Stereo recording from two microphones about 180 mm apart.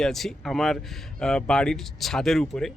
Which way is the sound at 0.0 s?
Centre (ahead or behind).